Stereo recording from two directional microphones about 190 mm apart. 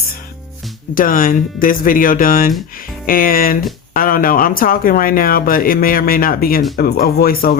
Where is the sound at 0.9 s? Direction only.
45° left (ahead or behind).